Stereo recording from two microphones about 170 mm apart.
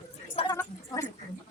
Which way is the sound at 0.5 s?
15° left (ahead or behind).